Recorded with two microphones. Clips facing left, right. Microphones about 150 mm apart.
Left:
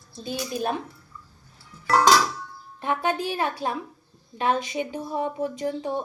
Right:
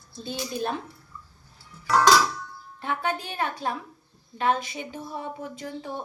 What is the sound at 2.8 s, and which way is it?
Speech, 20° left (ahead or behind).